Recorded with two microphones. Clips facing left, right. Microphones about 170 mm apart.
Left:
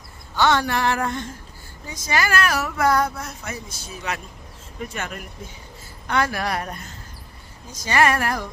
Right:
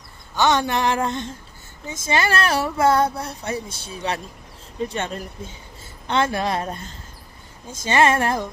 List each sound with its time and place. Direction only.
0.3 s speech: 20° right (ahead or behind)